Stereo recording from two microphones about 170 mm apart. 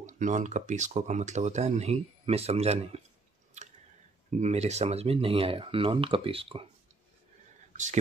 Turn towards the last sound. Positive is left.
turn(degrees=-45)  # may be behind; listen again after turning